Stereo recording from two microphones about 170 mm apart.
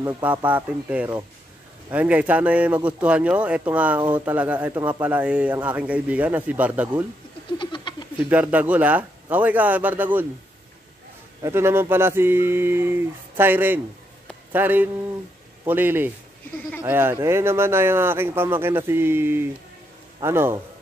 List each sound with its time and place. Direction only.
0.0 s a man's voice: 10° right (ahead or behind)
7.5 s a sound: 30° left (ahead or behind)
8.2 s a man's voice: 10° right (ahead or behind)
11.4 s a man's voice: 15° right (ahead or behind)